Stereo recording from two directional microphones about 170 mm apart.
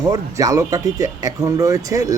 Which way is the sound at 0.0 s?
20° right (ahead or behind).